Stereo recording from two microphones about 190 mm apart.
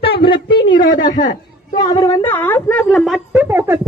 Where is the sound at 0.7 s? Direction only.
45° left (ahead or behind).